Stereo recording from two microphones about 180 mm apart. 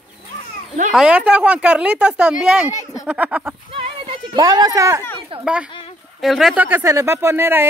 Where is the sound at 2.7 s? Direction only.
20° left (ahead or behind).